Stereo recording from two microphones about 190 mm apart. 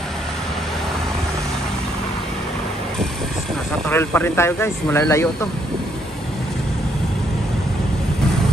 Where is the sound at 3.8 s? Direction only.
10° left (ahead or behind).